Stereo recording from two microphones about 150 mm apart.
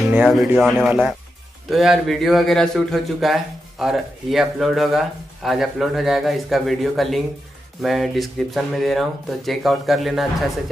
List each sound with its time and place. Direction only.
0.3 s speech: centre (ahead or behind)